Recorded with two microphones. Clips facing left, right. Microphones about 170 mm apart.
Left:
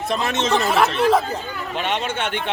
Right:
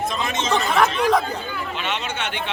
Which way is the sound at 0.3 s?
65° left (ahead or behind).